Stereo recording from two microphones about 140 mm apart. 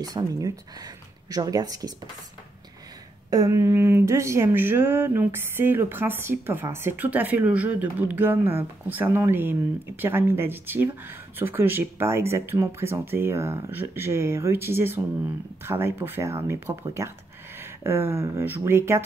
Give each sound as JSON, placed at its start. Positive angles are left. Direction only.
{"t": 0.0, "sound": "speech", "side_deg": -25}
{"t": 3.3, "sound": "speech", "side_deg": -25}